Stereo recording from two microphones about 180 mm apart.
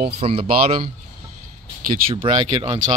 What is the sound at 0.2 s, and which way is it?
Speech, 30° right (ahead or behind).